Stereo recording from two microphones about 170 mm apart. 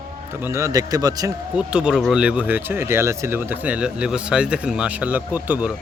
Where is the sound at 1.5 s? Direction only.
5° right (ahead or behind).